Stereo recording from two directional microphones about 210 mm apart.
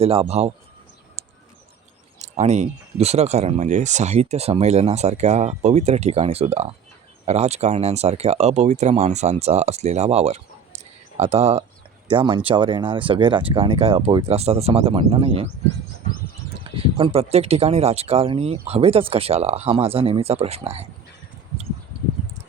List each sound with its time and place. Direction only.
0.0 s speech: 30° right (ahead or behind)
1.2 s bird: 30° right (ahead or behind)
2.1 s speech: 30° right (ahead or behind)
16.7 s speech: 25° right (ahead or behind)